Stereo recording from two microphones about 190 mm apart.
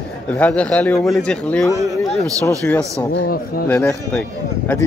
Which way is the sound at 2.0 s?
Centre (ahead or behind).